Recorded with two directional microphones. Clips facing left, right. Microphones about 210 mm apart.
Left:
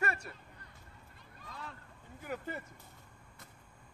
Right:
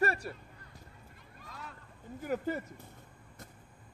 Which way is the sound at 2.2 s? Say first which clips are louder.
Right 7 dB; 40° right (ahead or behind).